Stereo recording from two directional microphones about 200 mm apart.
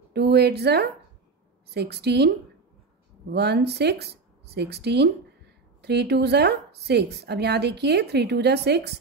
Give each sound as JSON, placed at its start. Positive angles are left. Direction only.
{"t": 0.1, "sound": "speech", "side_deg": -55}